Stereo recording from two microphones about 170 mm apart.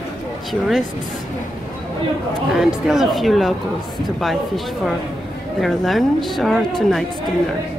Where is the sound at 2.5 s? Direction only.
Centre (ahead or behind).